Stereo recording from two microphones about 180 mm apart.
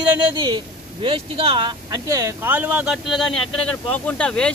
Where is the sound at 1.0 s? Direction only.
30° right (ahead or behind).